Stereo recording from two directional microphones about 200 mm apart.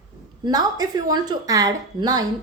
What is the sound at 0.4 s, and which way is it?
A woman's voice, 20° right (ahead or behind).